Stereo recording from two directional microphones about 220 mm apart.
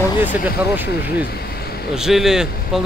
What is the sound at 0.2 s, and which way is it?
Speech, 10° right (ahead or behind).